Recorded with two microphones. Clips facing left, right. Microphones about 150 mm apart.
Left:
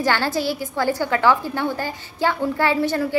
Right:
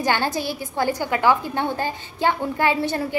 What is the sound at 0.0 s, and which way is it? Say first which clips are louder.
A woman's voice: left 2 dB; 20° right (ahead or behind).